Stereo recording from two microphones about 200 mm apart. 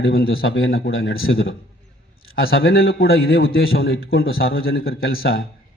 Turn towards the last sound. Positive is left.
turn(degrees=80)